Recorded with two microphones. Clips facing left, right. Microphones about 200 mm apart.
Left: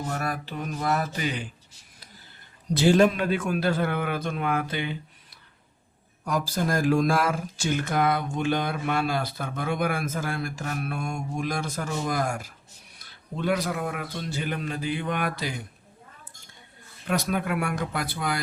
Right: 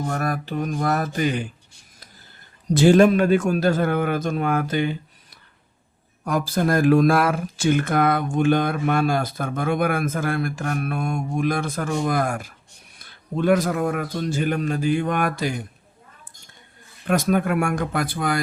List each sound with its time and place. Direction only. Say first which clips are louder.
0.0 s a man's voice: right 5 dB; 45° right (ahead or behind)
2.7 s a man's voice: right 5 dB; 55° right (ahead or behind)
6.2 s a man's voice: right 5 dB; 55° right (ahead or behind)
17.1 s a man's voice: right 6 dB; 50° right (ahead or behind)